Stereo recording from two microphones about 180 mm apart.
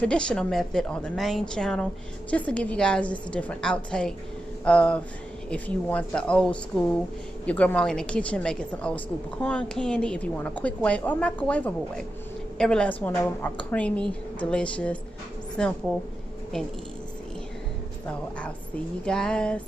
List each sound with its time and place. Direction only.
0.0 s a woman's voice: 5° left (ahead or behind)
19.0 s a woman's voice: 5° left (ahead or behind)